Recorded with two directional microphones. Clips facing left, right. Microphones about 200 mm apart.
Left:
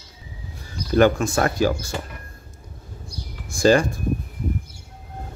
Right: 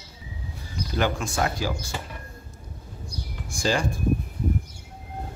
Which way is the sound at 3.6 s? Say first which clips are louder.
Left 9 dB; 55° left (ahead or behind).